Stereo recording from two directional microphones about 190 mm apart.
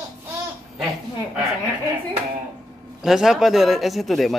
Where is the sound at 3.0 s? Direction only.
Centre (ahead or behind).